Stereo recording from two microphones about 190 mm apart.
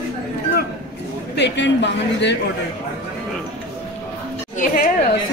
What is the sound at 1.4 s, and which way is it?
Speech, 65° left (ahead or behind).